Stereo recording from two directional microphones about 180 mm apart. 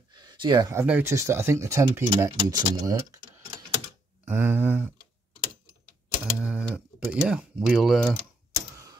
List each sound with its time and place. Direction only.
0.1 s speech: 25° right (ahead or behind)
4.2 s speech: 10° right (ahead or behind)
6.3 s speech: 5° right (ahead or behind)